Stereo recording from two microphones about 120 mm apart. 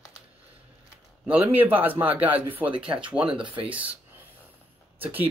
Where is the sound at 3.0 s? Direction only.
45° right (ahead or behind).